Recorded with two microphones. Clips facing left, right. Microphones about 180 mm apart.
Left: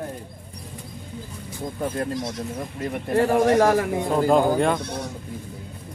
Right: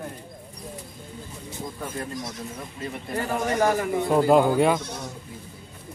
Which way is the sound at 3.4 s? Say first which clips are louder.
Left 3 dB; 75° left (ahead or behind).